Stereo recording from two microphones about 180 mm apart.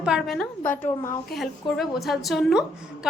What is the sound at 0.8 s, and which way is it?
Speech, 15° left (ahead or behind).